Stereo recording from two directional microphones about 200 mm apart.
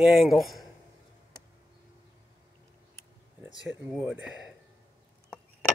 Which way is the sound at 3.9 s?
5° right (ahead or behind).